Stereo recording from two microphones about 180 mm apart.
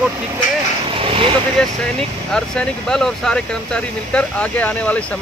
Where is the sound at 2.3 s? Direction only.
5° left (ahead or behind).